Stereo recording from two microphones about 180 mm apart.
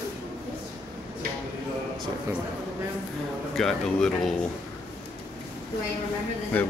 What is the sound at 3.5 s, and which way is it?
Speech, centre (ahead or behind).